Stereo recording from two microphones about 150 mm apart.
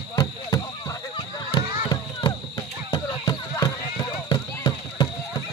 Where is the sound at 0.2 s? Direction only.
25° left (ahead or behind).